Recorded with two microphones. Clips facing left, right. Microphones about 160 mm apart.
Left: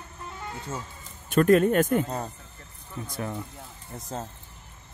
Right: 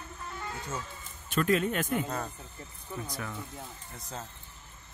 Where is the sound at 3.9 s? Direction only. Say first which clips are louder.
Left 8 dB; 40° left (ahead or behind).